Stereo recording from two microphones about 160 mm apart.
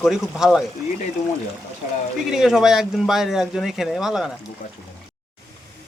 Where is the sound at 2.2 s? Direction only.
5° right (ahead or behind).